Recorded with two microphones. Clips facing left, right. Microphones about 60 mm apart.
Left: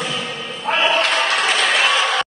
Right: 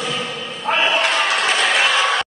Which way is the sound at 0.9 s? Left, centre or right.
Right.